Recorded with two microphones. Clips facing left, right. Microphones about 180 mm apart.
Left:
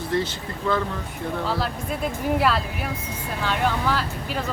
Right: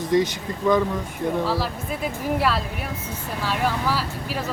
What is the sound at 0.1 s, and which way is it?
Speech, 15° right (ahead or behind).